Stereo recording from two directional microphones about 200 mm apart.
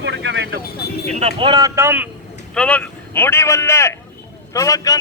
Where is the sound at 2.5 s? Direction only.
5° left (ahead or behind).